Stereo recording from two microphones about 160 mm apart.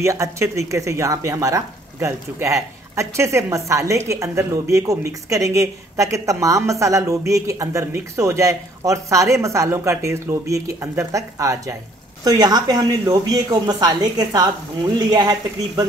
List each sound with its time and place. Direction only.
0.0 s speech: 20° right (ahead or behind)